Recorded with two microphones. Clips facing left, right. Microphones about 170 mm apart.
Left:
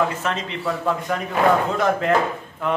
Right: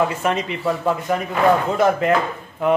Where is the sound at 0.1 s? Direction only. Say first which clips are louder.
Right 4 dB; 10° right (ahead or behind).